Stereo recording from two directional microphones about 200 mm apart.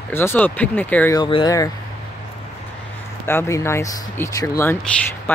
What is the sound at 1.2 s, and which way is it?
Speech, 25° left (ahead or behind).